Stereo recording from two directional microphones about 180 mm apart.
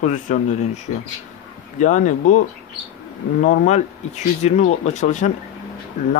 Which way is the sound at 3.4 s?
45° left (ahead or behind).